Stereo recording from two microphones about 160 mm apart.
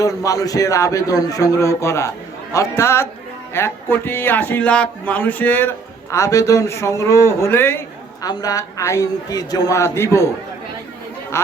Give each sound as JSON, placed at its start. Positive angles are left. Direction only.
{"t": 0.0, "sound": "a man's voice", "side_deg": 20}